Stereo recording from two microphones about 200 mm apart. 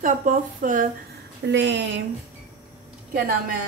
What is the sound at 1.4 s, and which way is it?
Speech, 60° right (ahead or behind).